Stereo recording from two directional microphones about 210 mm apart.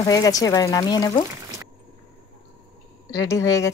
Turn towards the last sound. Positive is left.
turn(degrees=15)  # may be behind; listen again after turning